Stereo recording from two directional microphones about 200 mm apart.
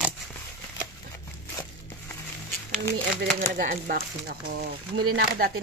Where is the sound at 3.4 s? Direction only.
45° right (ahead or behind).